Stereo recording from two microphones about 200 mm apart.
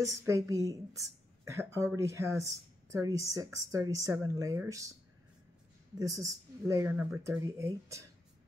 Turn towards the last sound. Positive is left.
turn(degrees=-15)  # may be behind; listen again after turning